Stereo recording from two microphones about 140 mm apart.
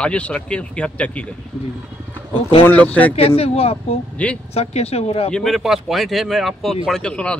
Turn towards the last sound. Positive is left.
turn(degrees=5)  # may be behind; listen again after turning